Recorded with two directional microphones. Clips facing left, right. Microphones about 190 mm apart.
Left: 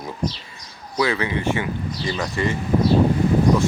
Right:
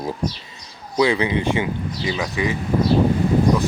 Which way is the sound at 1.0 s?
15° right (ahead or behind).